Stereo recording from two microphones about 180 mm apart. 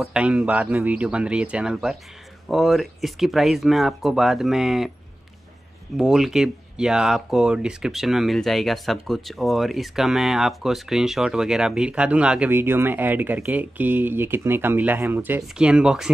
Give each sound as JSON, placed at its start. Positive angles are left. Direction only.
{"t": 0.0, "sound": "speech", "side_deg": -5}
{"t": 5.9, "sound": "speech", "side_deg": 0}